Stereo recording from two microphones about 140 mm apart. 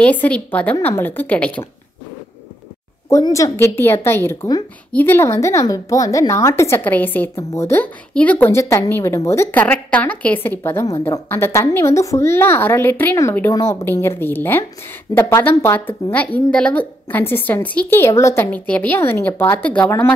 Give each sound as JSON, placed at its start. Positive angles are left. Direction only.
{"t": 0.0, "sound": "a woman's voice", "side_deg": 10}
{"t": 3.1, "sound": "a woman's voice", "side_deg": 25}